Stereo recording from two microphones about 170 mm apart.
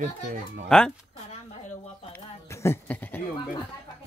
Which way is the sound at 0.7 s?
5° left (ahead or behind).